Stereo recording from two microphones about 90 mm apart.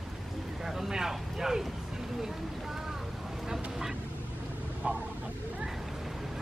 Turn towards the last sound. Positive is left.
turn(degrees=-15)  # may be behind; listen again after turning